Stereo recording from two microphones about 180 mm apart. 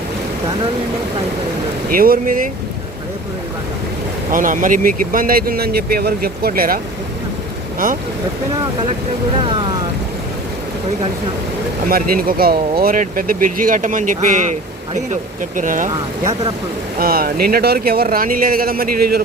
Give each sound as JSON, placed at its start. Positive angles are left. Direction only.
{"t": 1.9, "sound": "speech", "side_deg": -50}
{"t": 4.3, "sound": "speech", "side_deg": -50}
{"t": 9.4, "sound": "speech", "side_deg": -25}
{"t": 11.9, "sound": "speech", "side_deg": -55}